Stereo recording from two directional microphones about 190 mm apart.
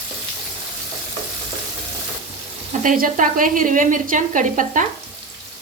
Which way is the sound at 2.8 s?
45° right (ahead or behind).